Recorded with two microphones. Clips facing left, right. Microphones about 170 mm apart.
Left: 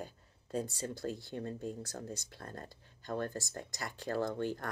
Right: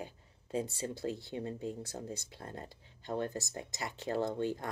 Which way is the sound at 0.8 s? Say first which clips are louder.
Right 1 dB; 25° right (ahead or behind).